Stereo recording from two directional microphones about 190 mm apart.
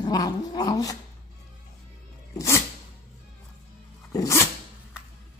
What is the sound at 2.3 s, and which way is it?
Sneeze, 15° left (ahead or behind).